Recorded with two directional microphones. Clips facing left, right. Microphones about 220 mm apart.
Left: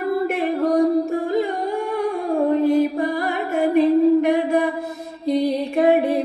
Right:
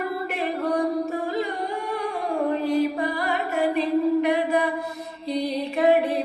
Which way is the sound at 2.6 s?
50° left (ahead or behind).